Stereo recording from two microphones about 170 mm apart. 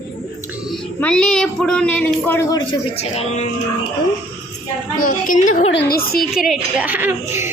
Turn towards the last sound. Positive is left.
turn(degrees=-15)  # may be behind; listen again after turning